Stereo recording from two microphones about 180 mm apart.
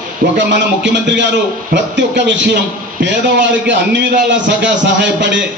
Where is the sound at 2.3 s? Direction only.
80° right.